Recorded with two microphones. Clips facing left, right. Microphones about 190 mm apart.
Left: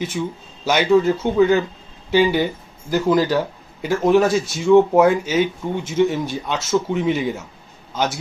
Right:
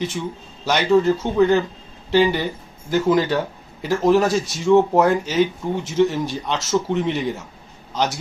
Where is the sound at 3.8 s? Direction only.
Centre (ahead or behind).